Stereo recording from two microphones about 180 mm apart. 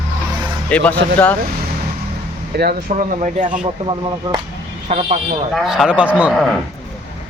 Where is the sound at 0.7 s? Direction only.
5° left (ahead or behind).